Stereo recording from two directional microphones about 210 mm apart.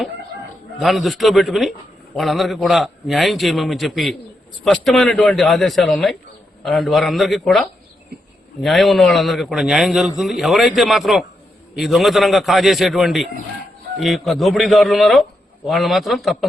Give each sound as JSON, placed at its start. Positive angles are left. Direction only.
{"t": 0.8, "sound": "a man's voice", "side_deg": 0}
{"t": 8.1, "sound": "a sound", "side_deg": -50}
{"t": 8.6, "sound": "a man's voice", "side_deg": 0}